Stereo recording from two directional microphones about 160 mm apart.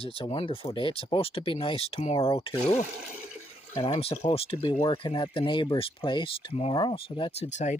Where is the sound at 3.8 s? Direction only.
35° left (ahead or behind).